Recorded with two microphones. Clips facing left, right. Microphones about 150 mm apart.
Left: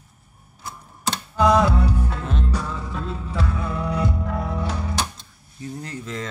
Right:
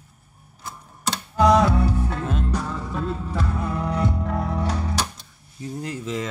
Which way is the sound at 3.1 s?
45° right (ahead or behind).